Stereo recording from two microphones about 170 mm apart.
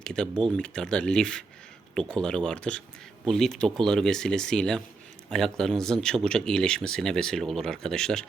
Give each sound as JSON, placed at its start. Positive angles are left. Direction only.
{"t": 0.0, "sound": "speech", "side_deg": 5}